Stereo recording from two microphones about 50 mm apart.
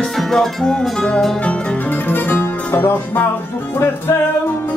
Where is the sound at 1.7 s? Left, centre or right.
Left.